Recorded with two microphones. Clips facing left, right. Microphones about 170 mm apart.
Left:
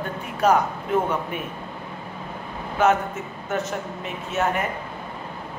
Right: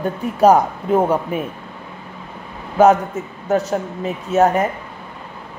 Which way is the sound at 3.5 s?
35° right (ahead or behind).